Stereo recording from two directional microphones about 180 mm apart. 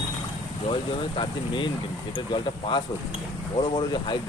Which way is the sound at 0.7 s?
25° left (ahead or behind).